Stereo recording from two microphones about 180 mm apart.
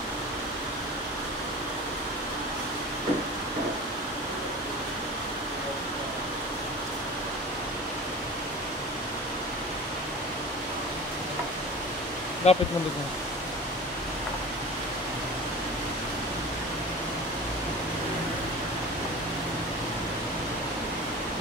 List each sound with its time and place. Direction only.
12.4 s speech: 35° left (ahead or behind)